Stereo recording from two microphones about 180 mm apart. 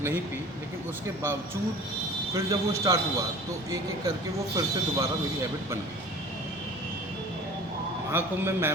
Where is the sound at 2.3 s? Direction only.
20° right (ahead or behind).